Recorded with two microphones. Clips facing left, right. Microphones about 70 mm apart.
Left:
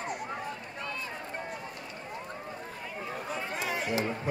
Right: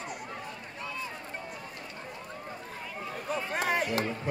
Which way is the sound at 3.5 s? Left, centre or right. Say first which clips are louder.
Right 3 dB; right.